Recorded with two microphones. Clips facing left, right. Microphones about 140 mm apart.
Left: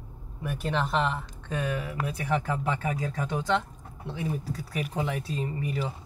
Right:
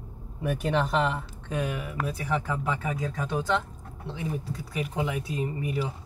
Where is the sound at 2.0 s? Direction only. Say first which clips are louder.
Right 1 dB; centre (ahead or behind).